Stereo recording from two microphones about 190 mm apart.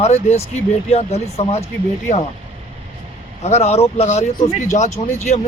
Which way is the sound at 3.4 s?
35° left (ahead or behind).